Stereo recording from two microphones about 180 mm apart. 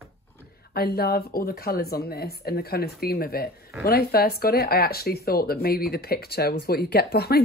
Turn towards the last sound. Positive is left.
turn(degrees=60)  # may be behind; listen again after turning